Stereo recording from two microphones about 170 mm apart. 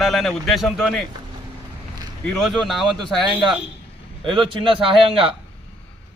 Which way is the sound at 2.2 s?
Centre (ahead or behind).